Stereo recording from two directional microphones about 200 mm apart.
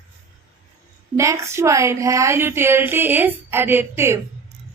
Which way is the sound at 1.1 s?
15° right (ahead or behind).